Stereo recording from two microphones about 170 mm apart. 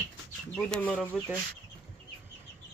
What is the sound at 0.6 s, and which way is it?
Speech, 5° left (ahead or behind).